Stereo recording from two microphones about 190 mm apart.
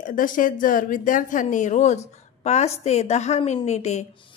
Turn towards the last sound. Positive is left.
turn(degrees=35)  # may be behind; listen again after turning